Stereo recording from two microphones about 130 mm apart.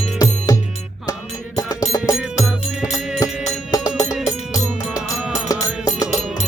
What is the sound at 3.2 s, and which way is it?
Music, 25° left (ahead or behind).